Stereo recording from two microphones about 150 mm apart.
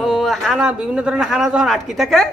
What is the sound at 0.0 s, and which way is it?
A man's voice, centre (ahead or behind).